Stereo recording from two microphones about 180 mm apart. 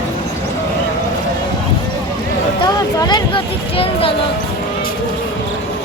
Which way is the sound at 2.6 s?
25° left (ahead or behind).